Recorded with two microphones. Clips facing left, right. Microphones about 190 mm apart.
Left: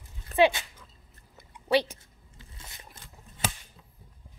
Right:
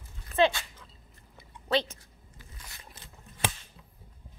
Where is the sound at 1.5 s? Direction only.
10° left (ahead or behind).